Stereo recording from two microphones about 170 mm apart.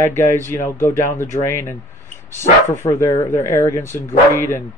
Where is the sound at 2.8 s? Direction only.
15° left (ahead or behind).